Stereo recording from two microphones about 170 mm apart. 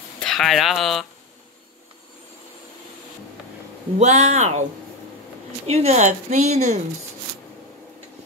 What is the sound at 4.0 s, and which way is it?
Speech, 40° right (ahead or behind).